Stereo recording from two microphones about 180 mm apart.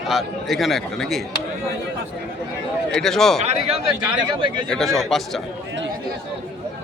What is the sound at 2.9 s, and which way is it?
Speech, 5° left (ahead or behind).